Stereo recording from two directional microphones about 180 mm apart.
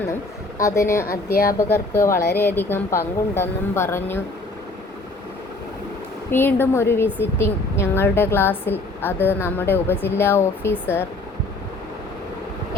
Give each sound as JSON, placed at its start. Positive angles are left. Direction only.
{"t": 0.6, "sound": "a woman's voice", "side_deg": 15}
{"t": 1.3, "sound": "speech", "side_deg": 55}
{"t": 1.5, "sound": "a woman's voice", "side_deg": 15}
{"t": 6.3, "sound": "a woman's voice", "side_deg": 10}